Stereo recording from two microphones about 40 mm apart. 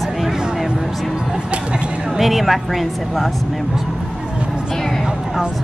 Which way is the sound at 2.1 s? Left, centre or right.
Centre.